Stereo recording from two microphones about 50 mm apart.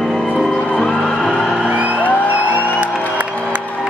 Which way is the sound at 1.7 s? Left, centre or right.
Right.